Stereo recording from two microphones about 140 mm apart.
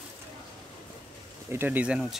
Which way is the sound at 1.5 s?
15° right (ahead or behind).